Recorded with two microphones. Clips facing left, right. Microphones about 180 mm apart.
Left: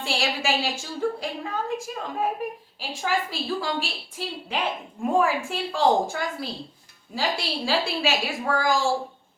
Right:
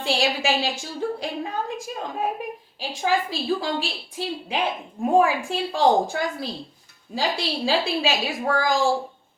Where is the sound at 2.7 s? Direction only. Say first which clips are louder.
Right 4 dB; 20° right (ahead or behind).